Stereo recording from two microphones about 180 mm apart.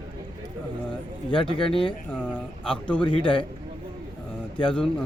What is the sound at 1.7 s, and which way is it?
Speech, 30° left (ahead or behind).